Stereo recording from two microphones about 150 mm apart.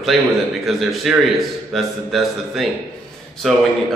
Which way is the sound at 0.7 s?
Centre (ahead or behind).